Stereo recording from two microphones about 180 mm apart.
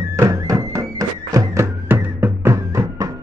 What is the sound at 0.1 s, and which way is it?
Music, 20° right (ahead or behind).